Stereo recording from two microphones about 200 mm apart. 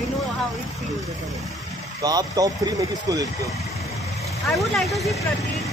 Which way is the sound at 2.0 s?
20° right (ahead or behind).